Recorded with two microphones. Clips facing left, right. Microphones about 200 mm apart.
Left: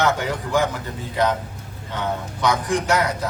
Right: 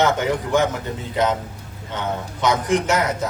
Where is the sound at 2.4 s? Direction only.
20° right (ahead or behind).